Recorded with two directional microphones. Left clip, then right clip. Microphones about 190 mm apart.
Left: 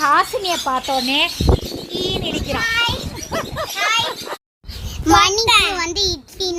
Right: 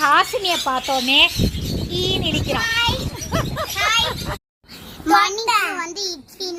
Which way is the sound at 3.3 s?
Centre (ahead or behind).